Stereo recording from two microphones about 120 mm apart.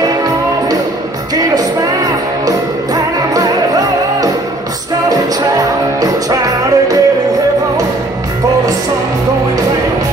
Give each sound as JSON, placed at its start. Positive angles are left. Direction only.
{"t": 1.3, "sound": "music", "side_deg": -35}
{"t": 5.9, "sound": "music", "side_deg": -30}